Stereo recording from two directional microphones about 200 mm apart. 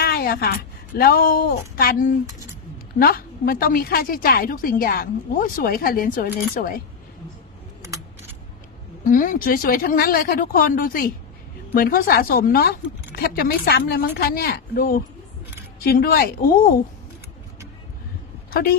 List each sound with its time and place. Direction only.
0.0 s a woman's voice: 50° left (ahead or behind)
9.0 s a woman's voice: 40° left (ahead or behind)